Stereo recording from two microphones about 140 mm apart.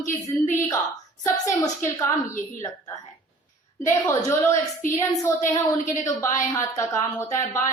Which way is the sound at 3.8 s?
20° left (ahead or behind).